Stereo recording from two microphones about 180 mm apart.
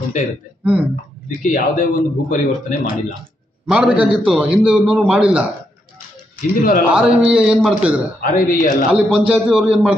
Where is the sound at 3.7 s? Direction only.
5° right (ahead or behind).